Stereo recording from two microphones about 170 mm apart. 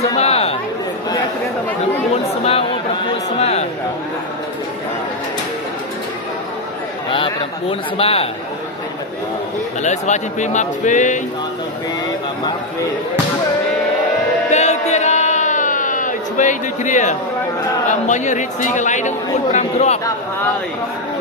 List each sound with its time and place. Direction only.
0.2 s chatter: 35° left (ahead or behind)
3.3 s a man's voice: 40° left (ahead or behind)
7.1 s a man's voice: 30° left (ahead or behind)
9.8 s speech: 45° left (ahead or behind)
14.5 s a sound: 40° left (ahead or behind)
17.8 s speech: 45° left (ahead or behind)